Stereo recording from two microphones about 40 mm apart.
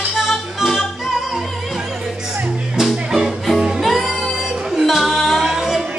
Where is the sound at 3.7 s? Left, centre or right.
Centre.